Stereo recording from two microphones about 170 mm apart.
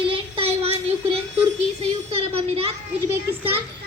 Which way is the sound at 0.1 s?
35° right (ahead or behind).